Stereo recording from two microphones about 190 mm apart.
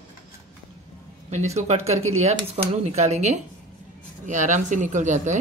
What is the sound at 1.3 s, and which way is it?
Speech, 35° right (ahead or behind).